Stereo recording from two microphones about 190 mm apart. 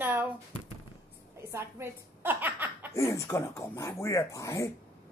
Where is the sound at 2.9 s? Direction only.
15° left (ahead or behind).